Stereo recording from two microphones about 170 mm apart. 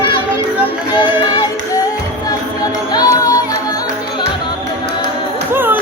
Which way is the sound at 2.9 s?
25° left (ahead or behind).